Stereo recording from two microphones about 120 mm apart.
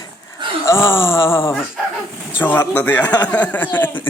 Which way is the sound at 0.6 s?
20° left (ahead or behind).